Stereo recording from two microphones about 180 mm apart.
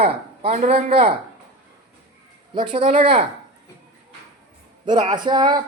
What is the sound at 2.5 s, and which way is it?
Speech, 25° right (ahead or behind).